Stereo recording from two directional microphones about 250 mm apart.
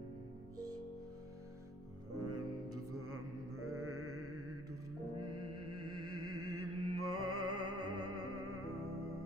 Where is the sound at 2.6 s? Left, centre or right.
Right.